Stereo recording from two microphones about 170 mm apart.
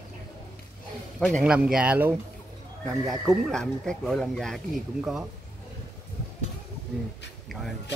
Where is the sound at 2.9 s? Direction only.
Centre (ahead or behind).